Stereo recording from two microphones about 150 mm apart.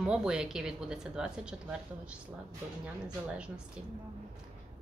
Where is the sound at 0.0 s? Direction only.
5° right (ahead or behind).